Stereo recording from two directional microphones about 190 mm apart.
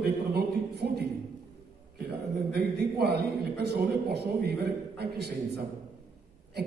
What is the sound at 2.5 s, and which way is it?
A man's voice, 60° right (ahead or behind).